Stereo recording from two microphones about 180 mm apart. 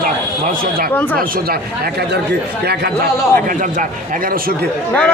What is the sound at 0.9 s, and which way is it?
Speech, 10° left (ahead or behind).